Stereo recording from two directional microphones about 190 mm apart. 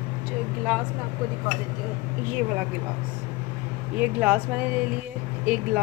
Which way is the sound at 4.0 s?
10° right (ahead or behind).